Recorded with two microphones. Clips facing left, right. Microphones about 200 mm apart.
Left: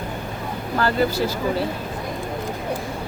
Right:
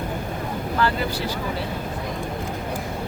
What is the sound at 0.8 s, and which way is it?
Speech, 40° left (ahead or behind).